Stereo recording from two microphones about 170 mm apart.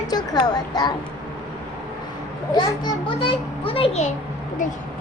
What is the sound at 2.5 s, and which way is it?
A child's voice, 30° left (ahead or behind).